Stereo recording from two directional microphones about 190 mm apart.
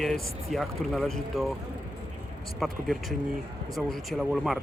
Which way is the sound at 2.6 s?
Centre (ahead or behind).